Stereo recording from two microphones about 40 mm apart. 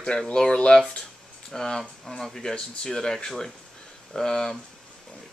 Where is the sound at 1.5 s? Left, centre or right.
Centre.